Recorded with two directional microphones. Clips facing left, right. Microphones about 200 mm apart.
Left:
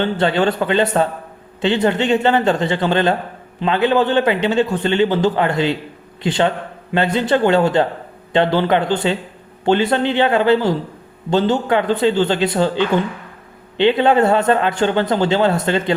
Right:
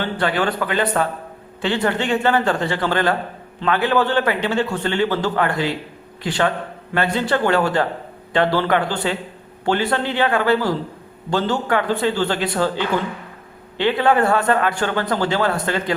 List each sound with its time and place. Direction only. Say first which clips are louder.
0.0 s speech: left 4 dB; 25° left (ahead or behind)